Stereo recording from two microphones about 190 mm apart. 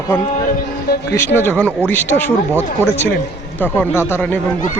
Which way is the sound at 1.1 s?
15° left (ahead or behind).